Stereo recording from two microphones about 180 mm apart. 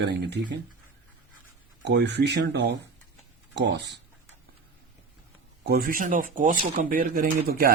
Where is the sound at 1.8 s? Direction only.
75° right (ahead or behind).